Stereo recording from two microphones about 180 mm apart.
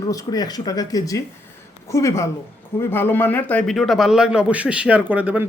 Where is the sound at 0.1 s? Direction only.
20° left (ahead or behind).